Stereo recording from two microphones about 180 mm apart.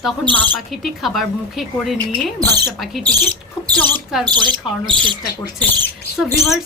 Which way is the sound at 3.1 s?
20° right (ahead or behind).